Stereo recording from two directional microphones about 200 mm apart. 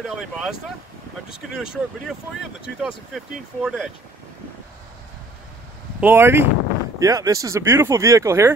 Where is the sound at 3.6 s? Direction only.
Centre (ahead or behind).